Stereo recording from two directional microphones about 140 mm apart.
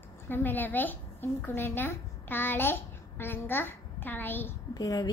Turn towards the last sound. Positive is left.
turn(degrees=25)  # may be behind; listen again after turning